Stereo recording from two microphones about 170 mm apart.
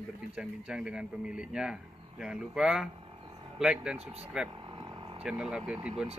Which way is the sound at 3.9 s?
35° right (ahead or behind).